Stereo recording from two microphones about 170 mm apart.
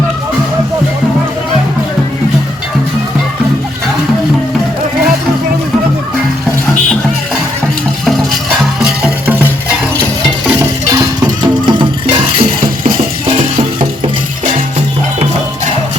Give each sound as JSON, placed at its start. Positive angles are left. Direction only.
{"t": 8.8, "sound": "music", "side_deg": -10}
{"t": 10.6, "sound": "music", "side_deg": -20}
{"t": 12.5, "sound": "a sound", "side_deg": -55}